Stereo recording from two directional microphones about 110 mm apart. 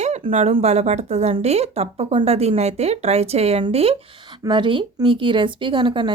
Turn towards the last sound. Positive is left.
turn(degrees=-45)  # may be behind; listen again after turning